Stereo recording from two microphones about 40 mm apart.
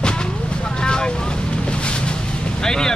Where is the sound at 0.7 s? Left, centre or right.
Left.